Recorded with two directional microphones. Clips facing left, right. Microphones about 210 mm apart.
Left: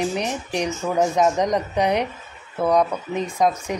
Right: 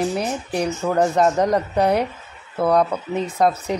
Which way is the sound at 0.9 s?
10° left (ahead or behind).